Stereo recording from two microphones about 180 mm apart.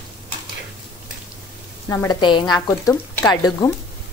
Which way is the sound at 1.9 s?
20° left (ahead or behind).